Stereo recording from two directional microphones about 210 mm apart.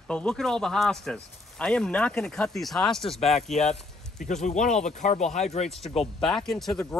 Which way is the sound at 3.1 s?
30° left (ahead or behind).